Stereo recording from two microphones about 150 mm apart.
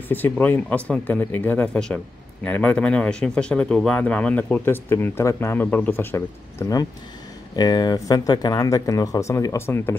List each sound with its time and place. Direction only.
0.1 s speech: 10° left (ahead or behind)